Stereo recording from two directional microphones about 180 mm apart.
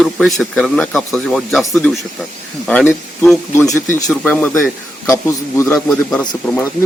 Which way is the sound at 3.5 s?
15° left (ahead or behind).